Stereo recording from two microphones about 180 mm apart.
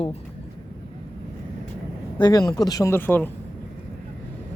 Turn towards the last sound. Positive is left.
turn(degrees=10)  # may be behind; listen again after turning